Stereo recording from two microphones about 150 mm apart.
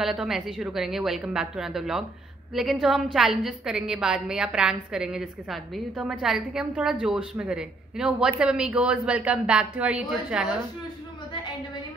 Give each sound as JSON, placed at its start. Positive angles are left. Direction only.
{"t": 0.0, "sound": "a woman's voice", "side_deg": -5}